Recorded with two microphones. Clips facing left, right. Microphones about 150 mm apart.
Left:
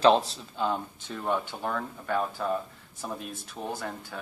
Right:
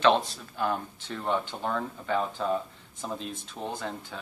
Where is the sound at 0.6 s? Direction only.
15° left (ahead or behind).